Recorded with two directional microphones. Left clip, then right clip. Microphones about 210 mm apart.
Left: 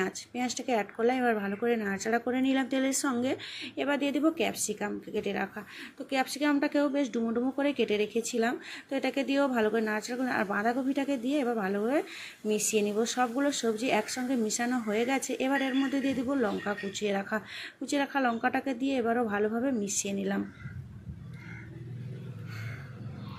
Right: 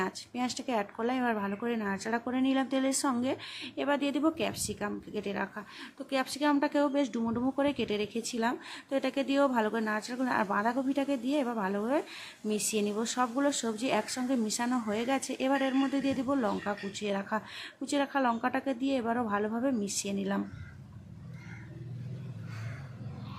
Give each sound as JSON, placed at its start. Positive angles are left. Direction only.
{"t": 0.0, "sound": "speech", "side_deg": -5}